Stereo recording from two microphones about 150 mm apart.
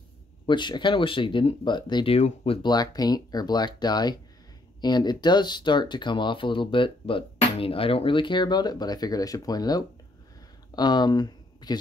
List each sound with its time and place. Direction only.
0.5 s speech: 30° left (ahead or behind)
2.1 s speech: 40° left (ahead or behind)